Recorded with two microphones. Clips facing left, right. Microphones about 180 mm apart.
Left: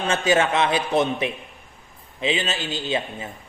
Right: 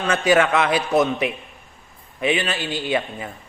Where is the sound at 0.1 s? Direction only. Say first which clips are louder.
Right 3 dB; 25° left (ahead or behind).